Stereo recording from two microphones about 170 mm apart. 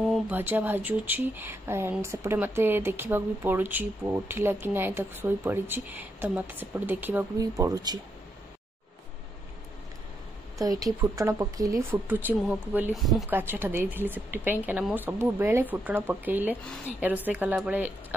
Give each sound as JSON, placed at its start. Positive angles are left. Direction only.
{"t": 0.1, "sound": "speech", "side_deg": -10}
{"t": 10.6, "sound": "speech", "side_deg": -20}